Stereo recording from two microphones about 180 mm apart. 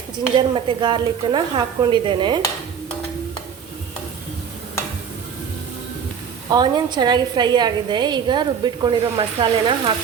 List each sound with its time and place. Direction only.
0.3 s a woman's voice: 25° right (ahead or behind)
6.5 s a woman's voice: 25° right (ahead or behind)